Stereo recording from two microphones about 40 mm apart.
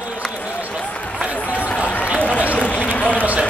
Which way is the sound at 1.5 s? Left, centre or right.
Left.